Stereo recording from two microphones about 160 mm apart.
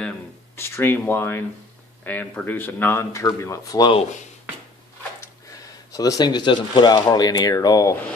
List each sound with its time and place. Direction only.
0.6 s speech: 15° left (ahead or behind)
5.2 s speech: 20° left (ahead or behind)